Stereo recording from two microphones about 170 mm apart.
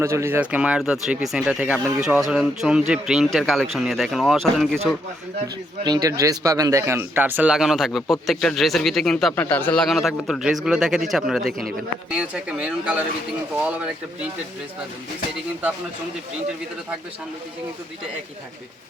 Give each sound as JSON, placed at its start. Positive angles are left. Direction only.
{"t": 0.0, "sound": "speech", "side_deg": -15}
{"t": 5.8, "sound": "speech", "side_deg": -20}